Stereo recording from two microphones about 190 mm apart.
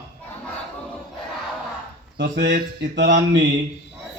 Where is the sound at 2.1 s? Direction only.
65° right (ahead or behind).